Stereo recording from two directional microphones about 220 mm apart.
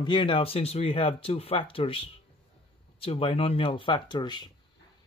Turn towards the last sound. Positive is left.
turn(degrees=20)  # may be behind; listen again after turning